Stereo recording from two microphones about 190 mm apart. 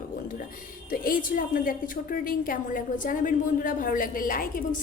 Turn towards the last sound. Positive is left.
turn(degrees=50)  # may be behind; listen again after turning